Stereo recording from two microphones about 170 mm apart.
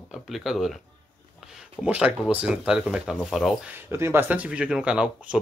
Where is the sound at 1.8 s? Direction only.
5° right (ahead or behind).